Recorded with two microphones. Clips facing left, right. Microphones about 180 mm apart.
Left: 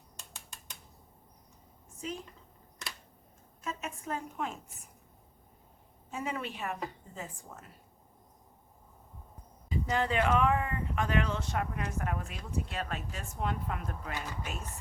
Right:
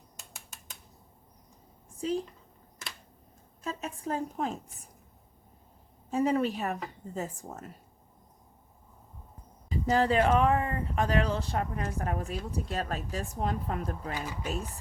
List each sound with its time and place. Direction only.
2.0 s speech: 35° right (ahead or behind)
3.6 s speech: 35° right (ahead or behind)
6.1 s speech: 35° right (ahead or behind)
9.6 s speech: 35° right (ahead or behind)